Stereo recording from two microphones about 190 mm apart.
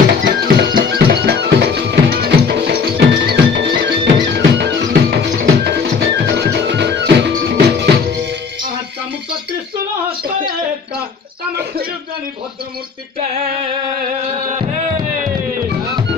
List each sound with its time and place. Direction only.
0.2 s music: 60° right (ahead or behind)